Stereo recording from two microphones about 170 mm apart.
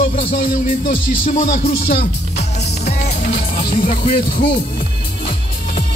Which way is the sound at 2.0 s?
40° left (ahead or behind).